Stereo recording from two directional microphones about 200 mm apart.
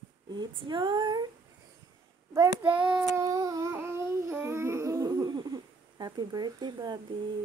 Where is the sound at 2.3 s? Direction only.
10° right (ahead or behind).